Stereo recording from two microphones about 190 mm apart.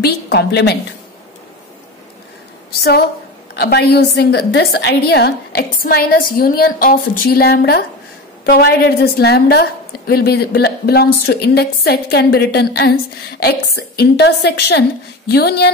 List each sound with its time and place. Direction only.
0.0 s a woman's voice: 60° left (ahead or behind)
3.5 s a woman's voice: 55° left (ahead or behind)